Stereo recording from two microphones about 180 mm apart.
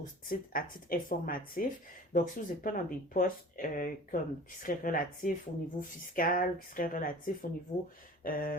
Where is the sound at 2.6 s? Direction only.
50° left (ahead or behind).